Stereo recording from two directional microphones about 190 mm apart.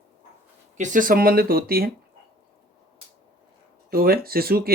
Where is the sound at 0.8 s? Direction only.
45° right (ahead or behind).